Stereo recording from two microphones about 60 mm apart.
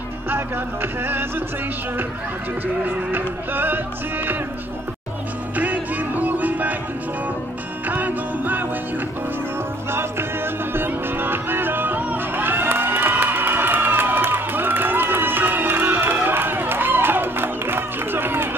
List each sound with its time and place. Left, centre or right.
3.1 s music: right
5.6 s music: right
7.9 s music: right
9.8 s music: right